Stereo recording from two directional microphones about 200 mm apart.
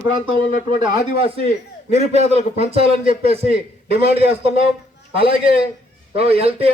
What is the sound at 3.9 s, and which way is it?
Speech, 30° right (ahead or behind).